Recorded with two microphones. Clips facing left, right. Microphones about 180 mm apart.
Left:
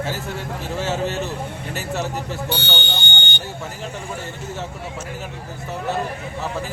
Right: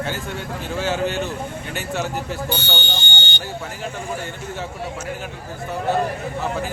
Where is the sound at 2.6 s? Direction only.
65° left (ahead or behind).